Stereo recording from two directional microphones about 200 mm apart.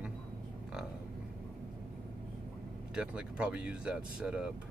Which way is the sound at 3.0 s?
5° right (ahead or behind).